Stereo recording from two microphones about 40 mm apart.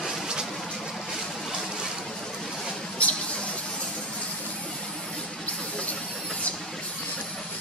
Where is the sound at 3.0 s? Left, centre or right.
Left.